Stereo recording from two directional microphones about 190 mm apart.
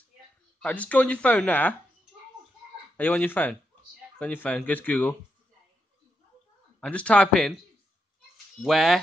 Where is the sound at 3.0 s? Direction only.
10° left (ahead or behind).